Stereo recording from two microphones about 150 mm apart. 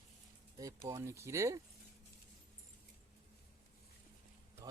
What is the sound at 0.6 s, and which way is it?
Speech, 20° right (ahead or behind).